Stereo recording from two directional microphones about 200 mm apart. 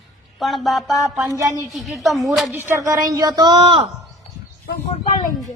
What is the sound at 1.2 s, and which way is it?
Speech, 15° right (ahead or behind).